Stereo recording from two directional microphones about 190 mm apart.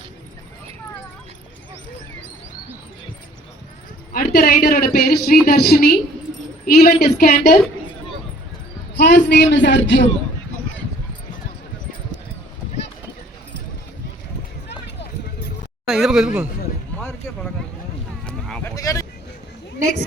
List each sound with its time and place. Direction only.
4.1 s a woman's voice: 55° left (ahead or behind)
9.0 s speech: 60° left (ahead or behind)
15.9 s speech: centre (ahead or behind)
17.0 s music: 10° left (ahead or behind)
18.3 s a sound: 5° left (ahead or behind)
18.7 s speech: 15° left (ahead or behind)